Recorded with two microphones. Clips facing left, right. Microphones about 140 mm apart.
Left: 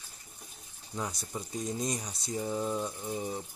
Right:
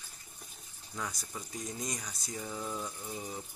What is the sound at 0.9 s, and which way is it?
Speech, 25° left (ahead or behind).